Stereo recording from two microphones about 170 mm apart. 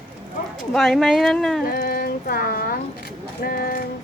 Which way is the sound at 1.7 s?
60° left (ahead or behind).